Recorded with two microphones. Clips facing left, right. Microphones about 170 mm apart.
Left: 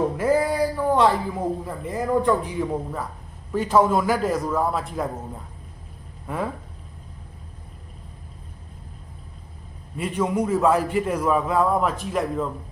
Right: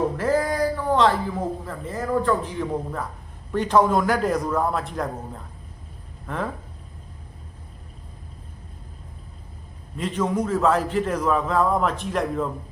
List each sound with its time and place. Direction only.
0.2 s a man's voice: 10° left (ahead or behind)
10.0 s a man's voice: 10° left (ahead or behind)